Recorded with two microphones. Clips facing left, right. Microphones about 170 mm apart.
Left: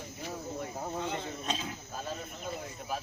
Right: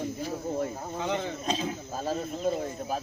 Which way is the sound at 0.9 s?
90° right.